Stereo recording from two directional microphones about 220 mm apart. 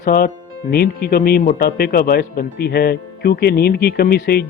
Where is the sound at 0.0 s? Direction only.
40° left (ahead or behind).